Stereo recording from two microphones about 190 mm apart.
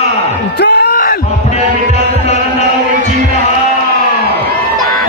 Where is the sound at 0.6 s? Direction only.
60° left (ahead or behind).